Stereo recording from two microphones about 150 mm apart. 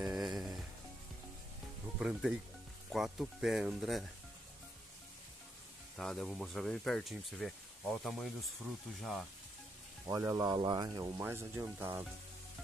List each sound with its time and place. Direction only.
0.0 s music: centre (ahead or behind)
2.0 s speech: 5° right (ahead or behind)
5.9 s speech: centre (ahead or behind)
10.0 s speech: 25° right (ahead or behind)